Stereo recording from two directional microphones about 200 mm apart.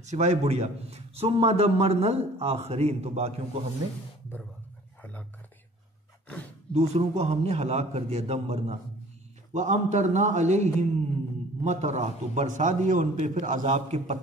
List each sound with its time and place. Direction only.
0.0 s a man's voice: 35° right (ahead or behind)
6.7 s a man's voice: 30° right (ahead or behind)